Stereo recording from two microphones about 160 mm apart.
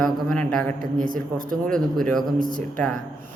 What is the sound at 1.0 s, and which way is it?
Speech, 60° right (ahead or behind).